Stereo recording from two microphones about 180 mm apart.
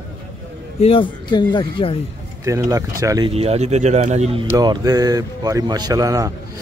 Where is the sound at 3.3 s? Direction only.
35° right (ahead or behind).